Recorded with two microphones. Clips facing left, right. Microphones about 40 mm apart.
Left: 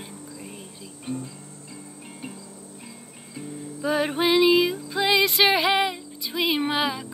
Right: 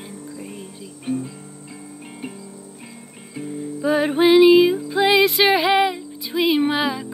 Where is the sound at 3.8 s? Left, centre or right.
Centre.